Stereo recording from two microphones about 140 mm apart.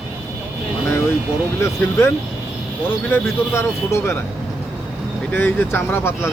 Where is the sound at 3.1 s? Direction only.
20° left (ahead or behind).